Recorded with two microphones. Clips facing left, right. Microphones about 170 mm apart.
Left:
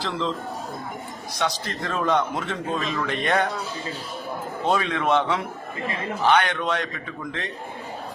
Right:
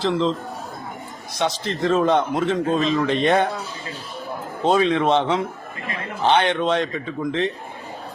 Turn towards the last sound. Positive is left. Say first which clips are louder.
# right 9 dB
turn(degrees=-25)  # may be behind; listen again after turning